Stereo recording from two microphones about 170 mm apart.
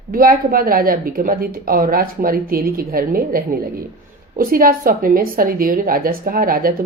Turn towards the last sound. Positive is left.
turn(degrees=-60)  # may be behind; listen again after turning